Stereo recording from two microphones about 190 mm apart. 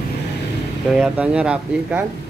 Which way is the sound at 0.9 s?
5° right (ahead or behind).